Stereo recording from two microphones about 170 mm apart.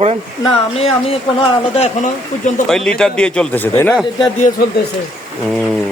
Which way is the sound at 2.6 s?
5° left (ahead or behind).